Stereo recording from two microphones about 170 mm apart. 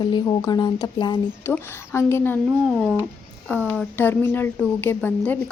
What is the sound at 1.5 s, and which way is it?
Speech, 15° left (ahead or behind).